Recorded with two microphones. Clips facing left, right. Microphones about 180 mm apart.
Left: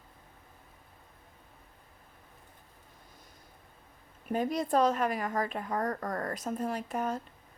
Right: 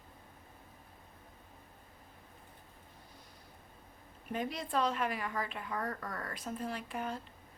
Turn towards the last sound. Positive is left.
turn(degrees=45)  # may be behind; listen again after turning